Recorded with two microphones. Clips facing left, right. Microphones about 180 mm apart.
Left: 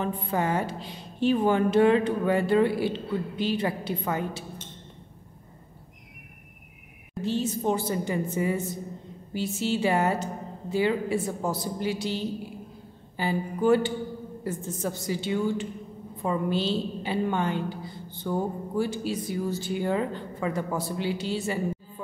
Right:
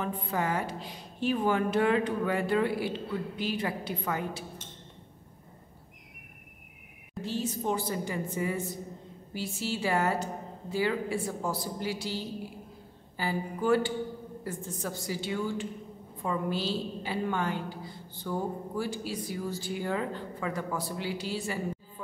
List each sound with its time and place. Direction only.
0.0 s a woman's voice: 25° left (ahead or behind)
7.2 s a woman's voice: 25° left (ahead or behind)